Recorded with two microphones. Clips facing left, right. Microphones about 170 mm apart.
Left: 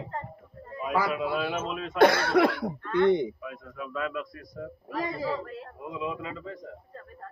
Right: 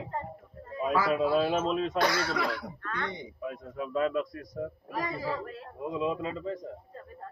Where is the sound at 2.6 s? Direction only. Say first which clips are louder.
Left 13 dB; 25° left (ahead or behind).